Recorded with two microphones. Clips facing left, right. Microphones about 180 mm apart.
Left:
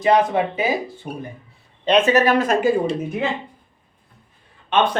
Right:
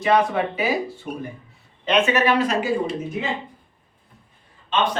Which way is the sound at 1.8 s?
35° left (ahead or behind).